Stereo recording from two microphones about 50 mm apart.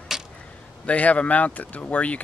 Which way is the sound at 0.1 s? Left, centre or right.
Centre.